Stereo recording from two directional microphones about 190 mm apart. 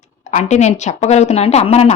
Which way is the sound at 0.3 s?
35° left (ahead or behind).